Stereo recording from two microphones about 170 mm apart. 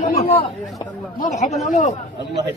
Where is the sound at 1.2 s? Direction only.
45° left (ahead or behind).